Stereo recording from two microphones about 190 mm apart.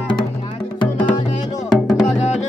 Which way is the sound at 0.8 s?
25° left (ahead or behind).